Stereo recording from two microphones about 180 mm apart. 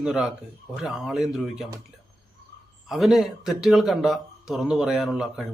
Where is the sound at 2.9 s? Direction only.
Centre (ahead or behind).